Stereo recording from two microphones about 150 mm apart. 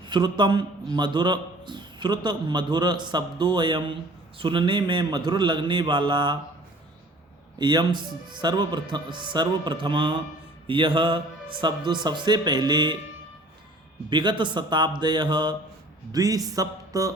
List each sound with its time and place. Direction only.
0.1 s a man's voice: 30° right (ahead or behind)
7.6 s a man's voice: 30° right (ahead or behind)
14.1 s a man's voice: 30° right (ahead or behind)